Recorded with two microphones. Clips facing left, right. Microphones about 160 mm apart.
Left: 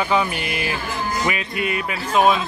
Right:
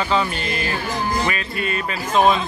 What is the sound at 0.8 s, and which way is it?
Music, 40° right (ahead or behind).